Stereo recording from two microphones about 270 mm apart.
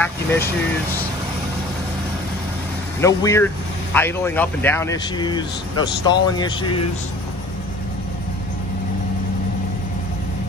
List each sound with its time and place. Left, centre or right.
0.0 s speech: centre
3.0 s speech: centre